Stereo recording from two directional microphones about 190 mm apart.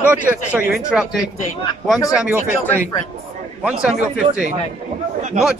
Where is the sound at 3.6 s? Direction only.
5° right (ahead or behind).